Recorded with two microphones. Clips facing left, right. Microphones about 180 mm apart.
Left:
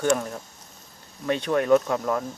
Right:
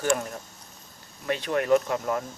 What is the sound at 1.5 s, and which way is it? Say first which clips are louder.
Speech: left 2 dB; 15° right (ahead or behind).